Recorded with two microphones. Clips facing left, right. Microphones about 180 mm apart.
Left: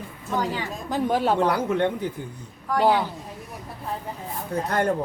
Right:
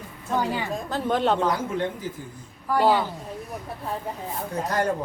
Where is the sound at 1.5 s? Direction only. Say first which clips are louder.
Left 3 dB; 65° left (ahead or behind).